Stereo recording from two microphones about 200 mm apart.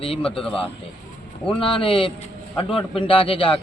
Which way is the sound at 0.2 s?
5° left (ahead or behind).